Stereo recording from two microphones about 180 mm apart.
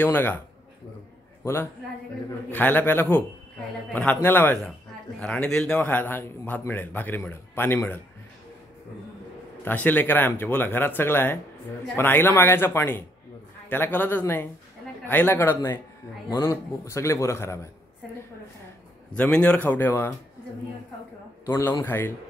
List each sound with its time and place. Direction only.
0.0 s a man's voice: 10° left (ahead or behind)
1.4 s a man's voice: 15° left (ahead or behind)
9.7 s a man's voice: 10° left (ahead or behind)
19.1 s a man's voice: 5° left (ahead or behind)
21.5 s a man's voice: 15° left (ahead or behind)